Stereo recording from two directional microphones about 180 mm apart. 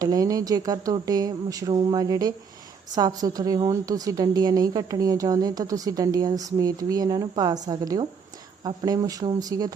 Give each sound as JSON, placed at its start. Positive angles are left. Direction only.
{"t": 0.0, "sound": "a woman's voice", "side_deg": -20}